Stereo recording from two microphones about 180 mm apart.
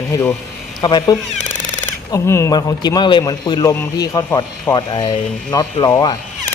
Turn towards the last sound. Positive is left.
turn(degrees=20)  # may be behind; listen again after turning